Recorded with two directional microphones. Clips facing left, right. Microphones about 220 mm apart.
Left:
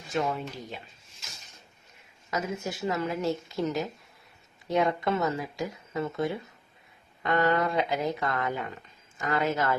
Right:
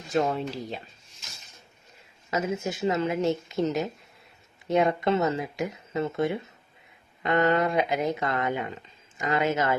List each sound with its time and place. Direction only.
0.1 s speech: 35° right (ahead or behind)
2.3 s speech: 20° right (ahead or behind)